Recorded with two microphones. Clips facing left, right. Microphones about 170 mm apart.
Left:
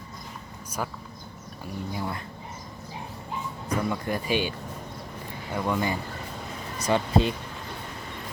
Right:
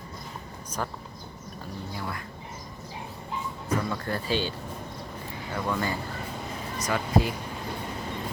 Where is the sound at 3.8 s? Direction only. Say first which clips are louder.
Left 2 dB; 15° left (ahead or behind).